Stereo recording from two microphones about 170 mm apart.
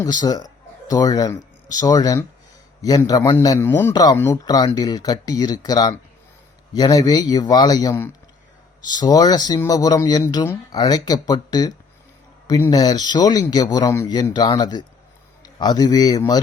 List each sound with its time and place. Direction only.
0.0 s speech: 25° left (ahead or behind)